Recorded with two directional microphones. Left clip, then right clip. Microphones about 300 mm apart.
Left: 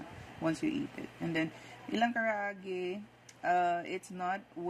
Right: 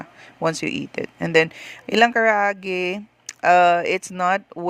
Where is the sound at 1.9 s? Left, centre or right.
Right.